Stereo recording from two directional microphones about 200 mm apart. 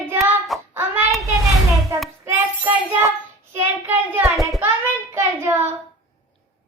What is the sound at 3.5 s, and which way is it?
A child's voice, 10° right (ahead or behind).